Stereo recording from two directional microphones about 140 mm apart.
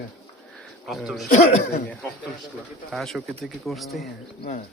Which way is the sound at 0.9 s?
Centre (ahead or behind).